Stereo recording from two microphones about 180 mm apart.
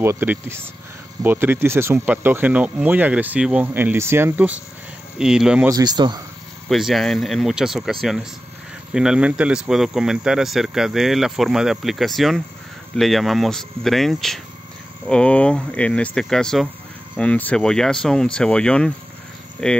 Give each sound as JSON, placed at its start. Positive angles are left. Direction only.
{"t": 0.0, "sound": "speech", "side_deg": -15}
{"t": 5.7, "sound": "a man's voice", "side_deg": -20}
{"t": 6.7, "sound": "speech", "side_deg": 0}